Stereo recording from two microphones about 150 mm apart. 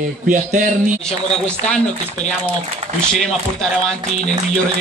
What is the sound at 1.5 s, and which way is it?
Speech, 5° left (ahead or behind).